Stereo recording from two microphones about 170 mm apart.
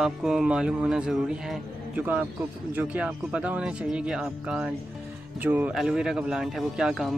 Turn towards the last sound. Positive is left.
turn(degrees=0)  # may be behind; listen again after turning